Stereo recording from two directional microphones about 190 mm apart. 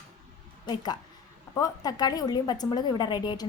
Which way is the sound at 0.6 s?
20° left (ahead or behind).